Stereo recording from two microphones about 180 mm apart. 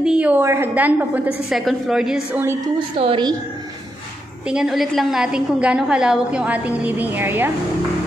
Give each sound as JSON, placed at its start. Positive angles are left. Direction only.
{"t": 0.0, "sound": "a woman's voice", "side_deg": -5}
{"t": 3.0, "sound": "a woman's voice", "side_deg": -30}
{"t": 4.5, "sound": "a woman's voice", "side_deg": -5}